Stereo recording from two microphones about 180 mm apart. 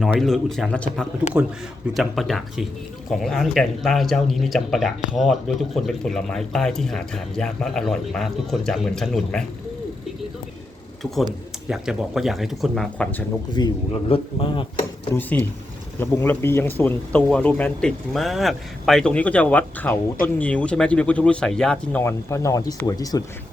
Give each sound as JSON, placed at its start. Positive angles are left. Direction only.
{"t": 0.0, "sound": "speech", "side_deg": 0}
{"t": 11.0, "sound": "speech", "side_deg": 0}
{"t": 13.5, "sound": "speech", "side_deg": 25}
{"t": 15.1, "sound": "speech", "side_deg": 10}